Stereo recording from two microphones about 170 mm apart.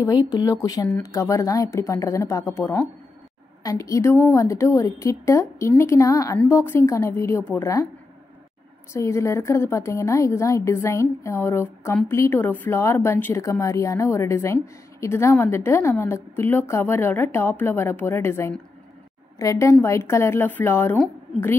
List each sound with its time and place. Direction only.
0.0 s a woman's voice: 20° left (ahead or behind)
8.9 s a woman's voice: 15° left (ahead or behind)